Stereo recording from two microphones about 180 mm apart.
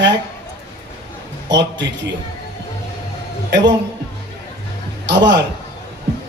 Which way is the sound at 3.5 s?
75° right (ahead or behind).